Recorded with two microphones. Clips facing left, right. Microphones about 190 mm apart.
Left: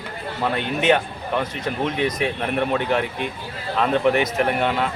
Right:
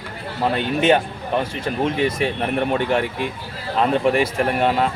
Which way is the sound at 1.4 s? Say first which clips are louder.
Right 2 dB; 30° right (ahead or behind).